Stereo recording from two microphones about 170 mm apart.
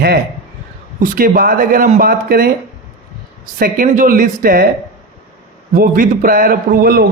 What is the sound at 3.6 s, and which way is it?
A man's voice, 55° right (ahead or behind).